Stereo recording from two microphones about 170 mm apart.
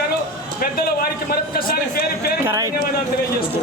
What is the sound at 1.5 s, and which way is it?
Speech, 60° left (ahead or behind).